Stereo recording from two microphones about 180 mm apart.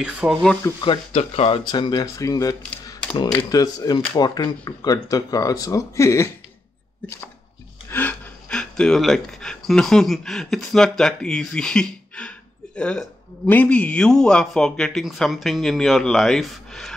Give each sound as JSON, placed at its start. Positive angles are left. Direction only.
{"t": 0.0, "sound": "speech", "side_deg": -5}
{"t": 0.7, "sound": "speech", "side_deg": 25}
{"t": 2.9, "sound": "camera", "side_deg": 25}
{"t": 3.4, "sound": "speech", "side_deg": 20}
{"t": 7.9, "sound": "speech", "side_deg": 10}